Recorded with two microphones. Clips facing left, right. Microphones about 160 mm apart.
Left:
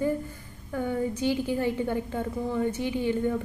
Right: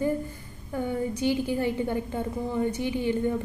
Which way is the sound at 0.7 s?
15° right (ahead or behind).